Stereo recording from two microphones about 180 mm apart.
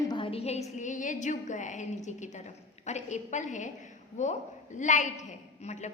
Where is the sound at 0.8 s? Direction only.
45° left (ahead or behind).